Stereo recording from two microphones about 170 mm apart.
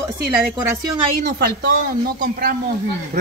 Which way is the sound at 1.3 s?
70° right (ahead or behind).